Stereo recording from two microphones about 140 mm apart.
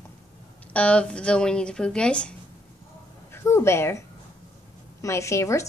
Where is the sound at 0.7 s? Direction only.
10° left (ahead or behind).